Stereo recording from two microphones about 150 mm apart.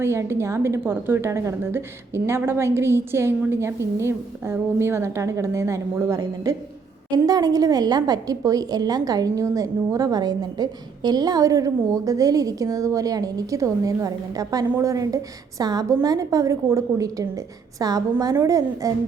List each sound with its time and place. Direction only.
0.0 s a woman's voice: 15° right (ahead or behind)